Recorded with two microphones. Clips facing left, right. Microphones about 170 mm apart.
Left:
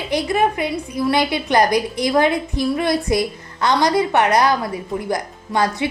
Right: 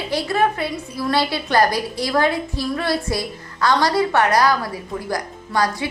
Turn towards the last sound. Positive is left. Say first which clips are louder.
# left 2 dB
turn(degrees=25)  # may be behind; listen again after turning